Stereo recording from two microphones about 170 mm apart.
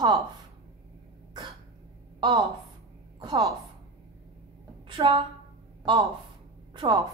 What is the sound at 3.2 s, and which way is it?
Speech, 25° right (ahead or behind).